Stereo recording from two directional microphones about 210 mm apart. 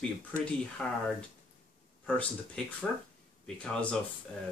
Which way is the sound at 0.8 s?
5° left (ahead or behind).